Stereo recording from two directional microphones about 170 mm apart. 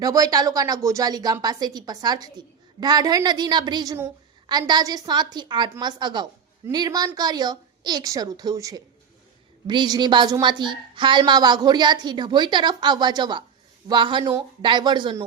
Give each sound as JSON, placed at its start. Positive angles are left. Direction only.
{"t": 0.0, "sound": "a woman's voice", "side_deg": -20}